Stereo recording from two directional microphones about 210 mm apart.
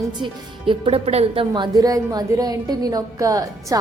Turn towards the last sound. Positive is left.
turn(degrees=-15)  # may be behind; listen again after turning